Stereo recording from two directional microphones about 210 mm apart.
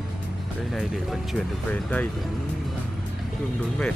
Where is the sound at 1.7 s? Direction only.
5° left (ahead or behind).